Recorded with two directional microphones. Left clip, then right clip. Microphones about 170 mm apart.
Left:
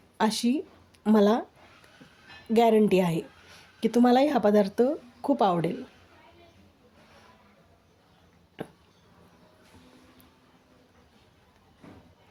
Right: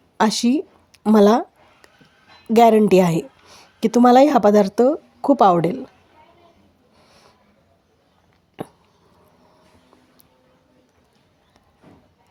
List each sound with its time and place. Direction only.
0.2 s speech: 45° right (ahead or behind)
2.5 s speech: 45° right (ahead or behind)
8.6 s a sound: 35° right (ahead or behind)